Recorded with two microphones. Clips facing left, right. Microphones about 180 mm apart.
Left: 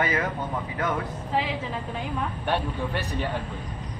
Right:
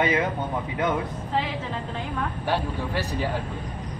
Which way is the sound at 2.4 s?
5° right (ahead or behind).